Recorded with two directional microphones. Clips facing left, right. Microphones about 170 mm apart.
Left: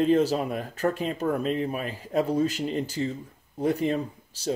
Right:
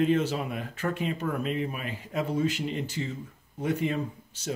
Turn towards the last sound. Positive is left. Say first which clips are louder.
# left 4 dB
turn(degrees=35)  # may be behind; listen again after turning